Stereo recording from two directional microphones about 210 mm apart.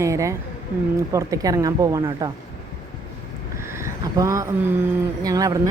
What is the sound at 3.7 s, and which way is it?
Speech, 15° right (ahead or behind).